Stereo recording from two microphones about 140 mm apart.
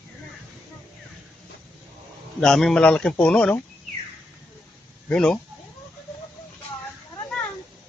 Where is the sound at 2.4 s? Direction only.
5° left (ahead or behind).